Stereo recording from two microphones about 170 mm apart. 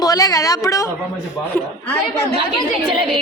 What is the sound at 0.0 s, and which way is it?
Speech, 20° left (ahead or behind).